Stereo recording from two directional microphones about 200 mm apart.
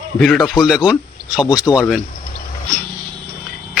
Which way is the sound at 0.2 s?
Centre (ahead or behind).